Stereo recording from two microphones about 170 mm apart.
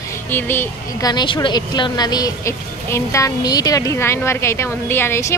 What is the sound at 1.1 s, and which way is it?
Speech, 30° left (ahead or behind).